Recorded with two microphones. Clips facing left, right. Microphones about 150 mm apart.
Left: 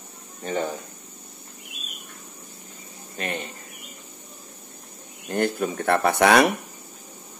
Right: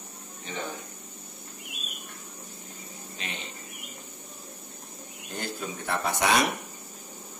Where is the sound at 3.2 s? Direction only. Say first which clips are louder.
Left 10 dB; 50° left (ahead or behind).